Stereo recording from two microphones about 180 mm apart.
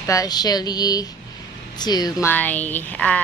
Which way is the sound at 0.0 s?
20° left (ahead or behind).